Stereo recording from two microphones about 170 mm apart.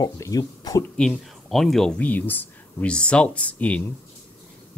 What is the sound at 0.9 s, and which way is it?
Speech, centre (ahead or behind).